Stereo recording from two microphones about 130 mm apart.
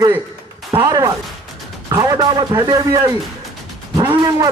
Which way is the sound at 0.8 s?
30° right (ahead or behind).